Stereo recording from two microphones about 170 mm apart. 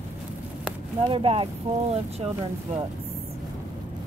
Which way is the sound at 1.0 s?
35° right (ahead or behind).